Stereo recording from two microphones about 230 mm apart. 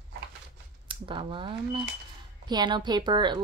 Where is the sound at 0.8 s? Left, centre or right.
Right.